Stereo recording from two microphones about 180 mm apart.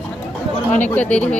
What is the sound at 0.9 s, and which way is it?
Speech, 10° left (ahead or behind).